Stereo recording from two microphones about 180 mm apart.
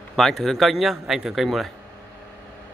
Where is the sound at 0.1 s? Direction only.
Centre (ahead or behind).